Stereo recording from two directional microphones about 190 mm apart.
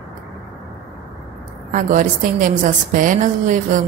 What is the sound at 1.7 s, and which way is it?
A woman's voice, 45° right (ahead or behind).